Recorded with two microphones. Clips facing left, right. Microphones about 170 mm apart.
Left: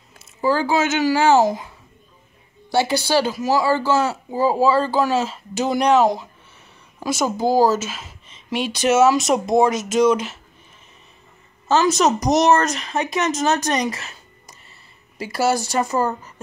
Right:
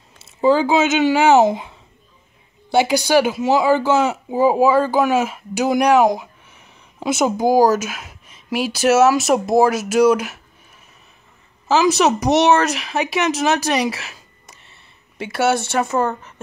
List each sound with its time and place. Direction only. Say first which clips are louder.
0.4 s a child's voice: right 4 dB; 20° right (ahead or behind)
2.7 s speech: right 3 dB; 15° right (ahead or behind)
11.6 s speech: right 2 dB; 10° right (ahead or behind)
14.6 s a sound: even; centre (ahead or behind)
15.7 s speech: right 1 dB; 5° right (ahead or behind)